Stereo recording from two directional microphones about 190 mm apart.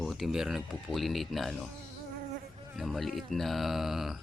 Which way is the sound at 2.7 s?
Centre (ahead or behind).